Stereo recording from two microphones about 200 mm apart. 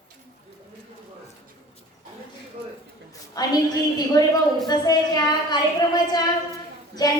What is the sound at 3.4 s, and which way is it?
A woman's voice, 20° left (ahead or behind).